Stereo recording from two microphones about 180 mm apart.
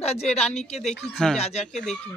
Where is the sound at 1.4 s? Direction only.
35° left (ahead or behind).